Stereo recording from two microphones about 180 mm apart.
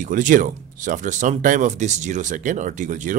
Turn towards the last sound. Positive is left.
turn(degrees=-45)  # may be behind; listen again after turning